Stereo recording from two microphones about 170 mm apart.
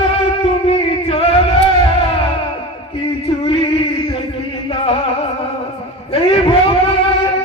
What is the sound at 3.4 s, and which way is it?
Male singing, 30° left (ahead or behind).